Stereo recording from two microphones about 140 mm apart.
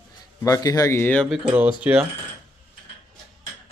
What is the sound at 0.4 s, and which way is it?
Speech, 25° left (ahead or behind).